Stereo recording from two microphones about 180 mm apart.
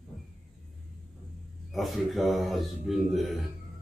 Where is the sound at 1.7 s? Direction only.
Centre (ahead or behind).